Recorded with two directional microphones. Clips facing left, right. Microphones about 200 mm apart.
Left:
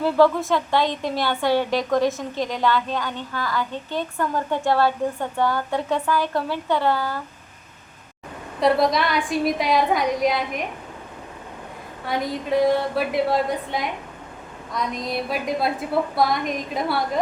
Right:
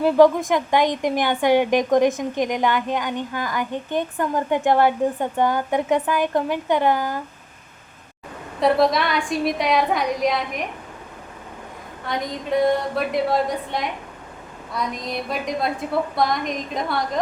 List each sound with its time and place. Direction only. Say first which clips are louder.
0.0 s a woman's voice: right 3 dB; 15° right (ahead or behind)
8.6 s a woman's voice: right 1 dB; centre (ahead or behind)
12.0 s a woman's voice: left 1 dB; 5° left (ahead or behind)